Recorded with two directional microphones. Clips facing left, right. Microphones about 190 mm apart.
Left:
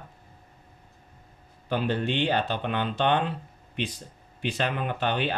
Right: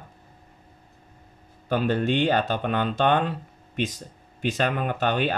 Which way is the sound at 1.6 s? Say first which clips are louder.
Right 4 dB; 45° right (ahead or behind).